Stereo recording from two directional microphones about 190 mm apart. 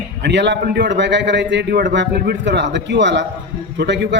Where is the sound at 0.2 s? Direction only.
65° right (ahead or behind).